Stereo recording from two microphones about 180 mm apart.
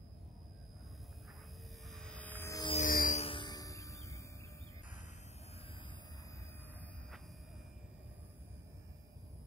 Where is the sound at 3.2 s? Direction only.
30° left (ahead or behind).